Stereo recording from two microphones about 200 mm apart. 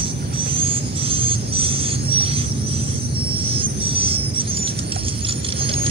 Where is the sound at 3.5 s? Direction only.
25° right (ahead or behind).